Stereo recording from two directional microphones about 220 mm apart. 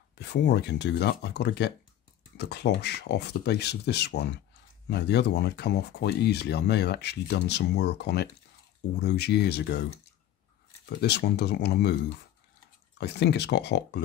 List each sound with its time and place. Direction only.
0.2 s speech: 50° left (ahead or behind)
11.0 s speech: 50° left (ahead or behind)